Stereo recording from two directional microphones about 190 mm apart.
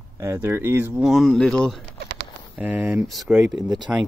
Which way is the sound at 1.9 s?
60° right (ahead or behind).